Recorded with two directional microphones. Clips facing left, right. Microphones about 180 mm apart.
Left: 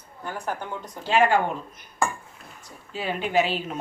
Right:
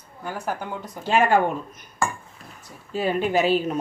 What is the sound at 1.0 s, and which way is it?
Speech, 45° right (ahead or behind).